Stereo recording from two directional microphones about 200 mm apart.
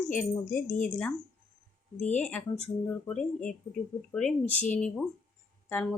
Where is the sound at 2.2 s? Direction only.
5° left (ahead or behind).